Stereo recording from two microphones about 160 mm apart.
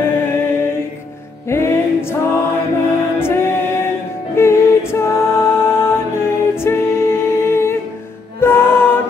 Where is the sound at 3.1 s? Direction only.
15° left (ahead or behind).